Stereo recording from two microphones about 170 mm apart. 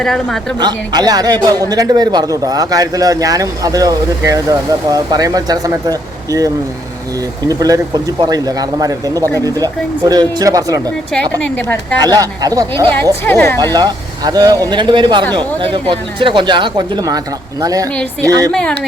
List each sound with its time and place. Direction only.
0.0 s a woman's voice: 5° left (ahead or behind)
0.6 s a man's voice: 25° right (ahead or behind)
11.1 s speech: 10° left (ahead or behind)
11.9 s a man's voice: 25° right (ahead or behind)
13.2 s speech: 10° left (ahead or behind)
13.7 s a man's voice: 25° right (ahead or behind)
18.5 s a woman's voice: 5° left (ahead or behind)